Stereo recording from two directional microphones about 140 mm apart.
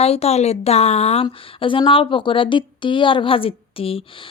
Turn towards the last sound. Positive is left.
turn(degrees=40)  # may be behind; listen again after turning